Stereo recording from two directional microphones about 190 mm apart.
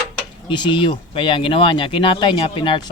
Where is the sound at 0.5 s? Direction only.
25° left (ahead or behind).